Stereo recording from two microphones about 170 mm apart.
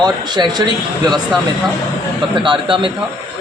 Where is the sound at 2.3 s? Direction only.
30° right (ahead or behind).